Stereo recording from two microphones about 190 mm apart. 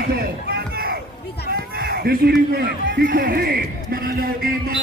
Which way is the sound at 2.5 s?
55° right (ahead or behind).